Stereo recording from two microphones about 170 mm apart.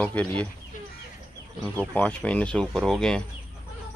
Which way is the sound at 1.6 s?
10° left (ahead or behind).